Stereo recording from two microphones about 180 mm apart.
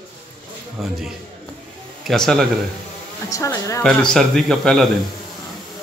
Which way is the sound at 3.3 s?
20° left (ahead or behind).